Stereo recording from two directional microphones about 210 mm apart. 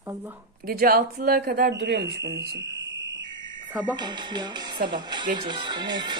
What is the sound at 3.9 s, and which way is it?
Speech, 20° right (ahead or behind).